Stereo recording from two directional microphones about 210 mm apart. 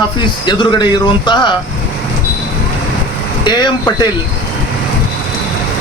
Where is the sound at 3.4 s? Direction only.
20° left (ahead or behind).